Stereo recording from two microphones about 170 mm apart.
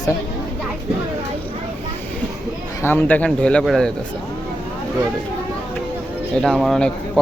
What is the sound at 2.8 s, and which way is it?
A man's voice, 10° left (ahead or behind).